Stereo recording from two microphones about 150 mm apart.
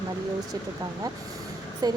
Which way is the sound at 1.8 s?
25° right (ahead or behind).